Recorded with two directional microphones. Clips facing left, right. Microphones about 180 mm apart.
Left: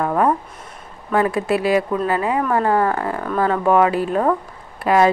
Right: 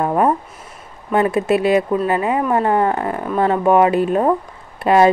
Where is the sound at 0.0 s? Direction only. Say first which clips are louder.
Right 2 dB; 20° right (ahead or behind).